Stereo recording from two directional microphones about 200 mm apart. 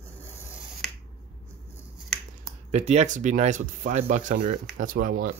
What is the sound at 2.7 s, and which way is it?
Speech, 35° right (ahead or behind).